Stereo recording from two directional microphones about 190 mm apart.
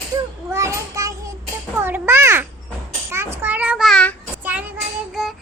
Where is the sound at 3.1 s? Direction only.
15° right (ahead or behind); by 4.1 s 5° left (ahead or behind).